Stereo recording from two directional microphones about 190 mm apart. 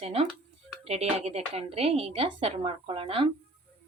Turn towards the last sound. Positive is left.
turn(degrees=-30)  # may be behind; listen again after turning